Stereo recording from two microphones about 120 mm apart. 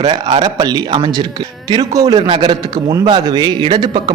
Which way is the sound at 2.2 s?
45° right (ahead or behind).